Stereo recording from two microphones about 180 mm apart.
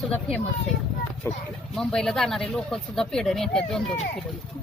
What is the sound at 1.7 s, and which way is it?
Speech, 5° left (ahead or behind).